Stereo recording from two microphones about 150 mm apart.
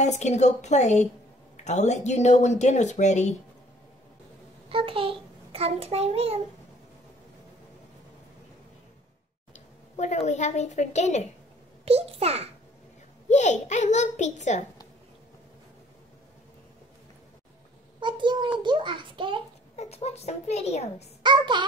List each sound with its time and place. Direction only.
0.0 s a woman's voice: 50° left (ahead or behind)
4.6 s a child's voice: 35° right (ahead or behind)
9.5 s a child's voice: 50° left (ahead or behind)
11.8 s a child's voice: 40° right (ahead or behind)
13.3 s a woman's voice: 50° left (ahead or behind)
18.0 s a child's voice: 30° right (ahead or behind)
19.7 s a woman's voice: 45° left (ahead or behind)
21.2 s a child's voice: 30° right (ahead or behind)